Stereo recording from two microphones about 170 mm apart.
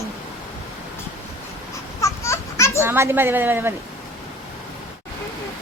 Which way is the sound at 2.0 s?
15° left (ahead or behind).